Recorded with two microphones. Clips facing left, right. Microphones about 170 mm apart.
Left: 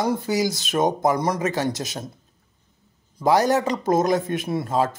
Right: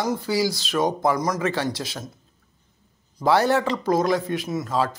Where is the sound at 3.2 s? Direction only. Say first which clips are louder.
Left 1 dB; 15° left (ahead or behind).